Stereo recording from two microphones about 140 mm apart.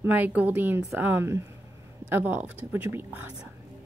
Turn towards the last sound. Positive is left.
turn(degrees=-15)  # may be behind; listen again after turning